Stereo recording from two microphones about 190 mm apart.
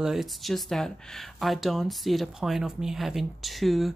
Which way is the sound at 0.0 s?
Centre (ahead or behind).